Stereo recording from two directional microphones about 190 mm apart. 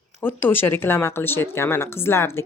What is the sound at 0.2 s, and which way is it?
Speech, 10° left (ahead or behind).